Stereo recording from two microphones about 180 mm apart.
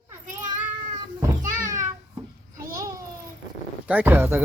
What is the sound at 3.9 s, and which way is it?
Speech, 10° right (ahead or behind).